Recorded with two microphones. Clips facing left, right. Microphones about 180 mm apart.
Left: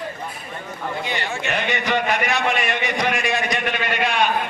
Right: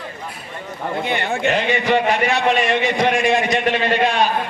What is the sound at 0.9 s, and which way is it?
Speech, 55° right (ahead or behind).